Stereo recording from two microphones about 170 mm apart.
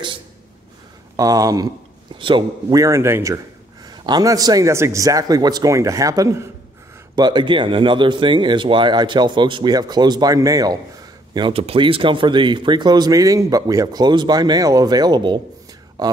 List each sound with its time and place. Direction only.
1.1 s speech: 20° right (ahead or behind)